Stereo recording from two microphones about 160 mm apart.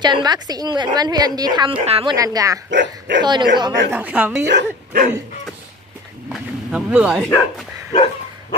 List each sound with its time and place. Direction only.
0.0 s a woman's voice: 25° right (ahead or behind)
2.1 s a woman's voice: 20° right (ahead or behind)
2.7 s speech: 90° right
3.3 s a woman's voice: 25° right (ahead or behind)
3.9 s a woman's voice: 10° right (ahead or behind)
4.5 s speech: 80° right
6.2 s speech: 5° right (ahead or behind)
7.9 s dog: 35° left (ahead or behind)